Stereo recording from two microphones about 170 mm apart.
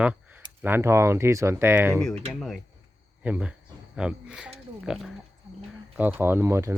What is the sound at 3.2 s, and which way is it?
Speech, 5° right (ahead or behind).